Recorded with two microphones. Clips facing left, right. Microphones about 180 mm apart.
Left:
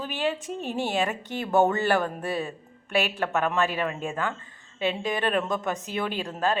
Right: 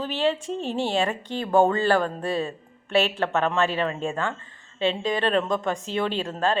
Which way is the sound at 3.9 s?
30° right (ahead or behind).